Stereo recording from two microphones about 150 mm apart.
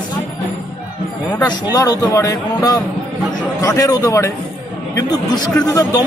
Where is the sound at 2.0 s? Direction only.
20° left (ahead or behind).